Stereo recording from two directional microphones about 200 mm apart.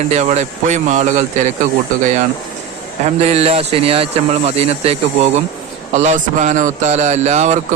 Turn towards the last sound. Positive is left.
turn(degrees=-35)  # may be behind; listen again after turning